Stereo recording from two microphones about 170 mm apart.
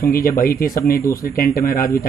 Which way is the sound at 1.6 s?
60° left (ahead or behind).